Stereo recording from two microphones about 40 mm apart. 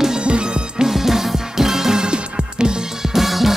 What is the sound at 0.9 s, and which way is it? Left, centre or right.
Music, centre.